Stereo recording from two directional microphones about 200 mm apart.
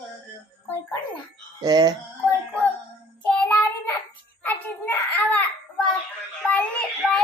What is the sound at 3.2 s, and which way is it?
Child singing, 10° left (ahead or behind).